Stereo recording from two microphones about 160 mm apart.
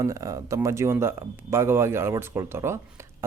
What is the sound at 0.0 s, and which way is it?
Speech, 20° right (ahead or behind).